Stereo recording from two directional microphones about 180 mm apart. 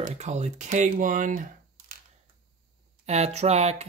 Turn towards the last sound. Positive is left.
turn(degrees=-35)  # may be behind; listen again after turning